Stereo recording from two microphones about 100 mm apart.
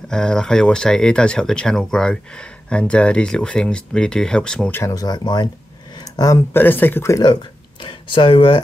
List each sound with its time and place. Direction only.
0.1 s speech: 5° left (ahead or behind)
4.9 s speech: 40° left (ahead or behind)
5.9 s a sound: 40° left (ahead or behind)
6.5 s speech: 20° left (ahead or behind)
7.8 s speech: 60° left (ahead or behind)